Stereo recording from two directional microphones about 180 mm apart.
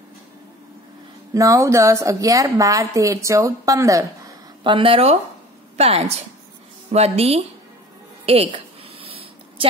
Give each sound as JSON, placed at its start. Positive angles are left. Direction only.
{"t": 1.3, "sound": "a woman's voice", "side_deg": -15}
{"t": 4.6, "sound": "a woman's voice", "side_deg": -30}
{"t": 9.0, "sound": "a sound", "side_deg": -30}